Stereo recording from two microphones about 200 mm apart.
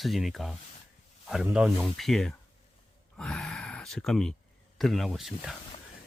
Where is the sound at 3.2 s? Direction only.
5° left (ahead or behind).